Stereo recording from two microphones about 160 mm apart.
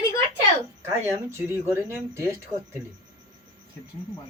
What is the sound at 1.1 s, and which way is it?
A woman's voice, 15° right (ahead or behind).